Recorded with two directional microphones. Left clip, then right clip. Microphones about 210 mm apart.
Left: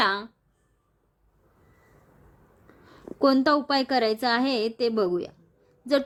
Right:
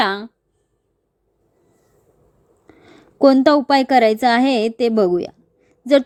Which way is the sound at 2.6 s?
20° right (ahead or behind).